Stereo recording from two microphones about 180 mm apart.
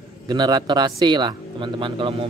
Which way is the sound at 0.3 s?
25° right (ahead or behind).